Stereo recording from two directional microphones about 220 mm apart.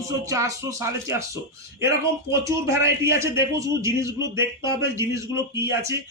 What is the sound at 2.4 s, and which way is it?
A man's voice, 15° right (ahead or behind).